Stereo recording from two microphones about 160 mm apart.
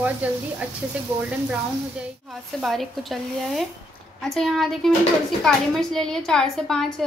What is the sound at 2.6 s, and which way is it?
A woman's voice, centre (ahead or behind).